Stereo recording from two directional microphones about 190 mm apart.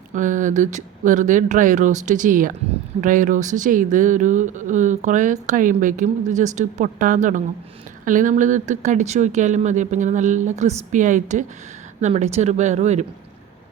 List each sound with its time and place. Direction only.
0.1 s speech: 40° right (ahead or behind)